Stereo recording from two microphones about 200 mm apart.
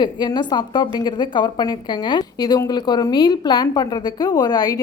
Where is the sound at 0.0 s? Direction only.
20° left (ahead or behind).